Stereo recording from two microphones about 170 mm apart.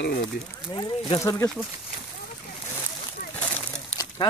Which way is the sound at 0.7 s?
30° left (ahead or behind).